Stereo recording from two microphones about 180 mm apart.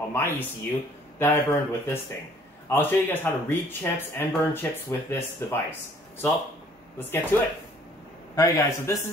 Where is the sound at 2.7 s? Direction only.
10° left (ahead or behind).